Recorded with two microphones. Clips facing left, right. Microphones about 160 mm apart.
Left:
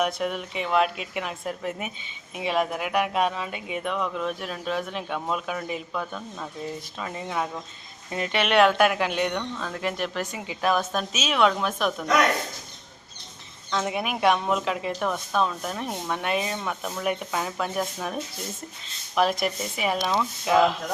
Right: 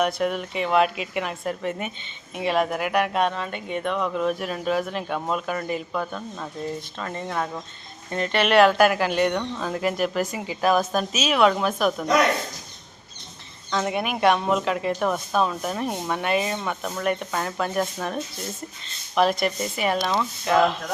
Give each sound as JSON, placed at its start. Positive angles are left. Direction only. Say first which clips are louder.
{"t": 0.0, "sound": "speech", "louder": "right 3 dB", "side_deg": 0}
{"t": 9.4, "sound": "speech", "louder": "right 4 dB", "side_deg": -10}
{"t": 13.7, "sound": "speech", "louder": "right 2 dB", "side_deg": 0}